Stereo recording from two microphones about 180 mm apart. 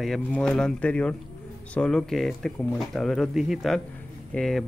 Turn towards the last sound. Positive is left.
turn(degrees=0)  # may be behind; listen again after turning